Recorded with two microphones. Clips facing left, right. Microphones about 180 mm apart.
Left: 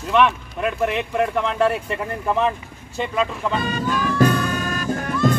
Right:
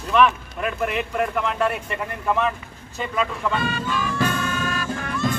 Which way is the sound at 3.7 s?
45° left (ahead or behind).